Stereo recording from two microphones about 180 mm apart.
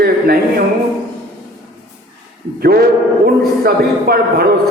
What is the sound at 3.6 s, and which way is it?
Speech, 60° right (ahead or behind).